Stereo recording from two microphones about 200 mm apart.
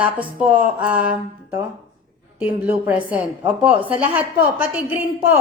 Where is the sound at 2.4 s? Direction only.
10° right (ahead or behind).